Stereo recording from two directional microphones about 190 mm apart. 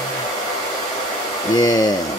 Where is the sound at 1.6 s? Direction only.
20° left (ahead or behind).